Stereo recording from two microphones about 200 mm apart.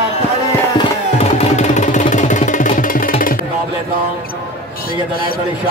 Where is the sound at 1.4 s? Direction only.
35° left (ahead or behind).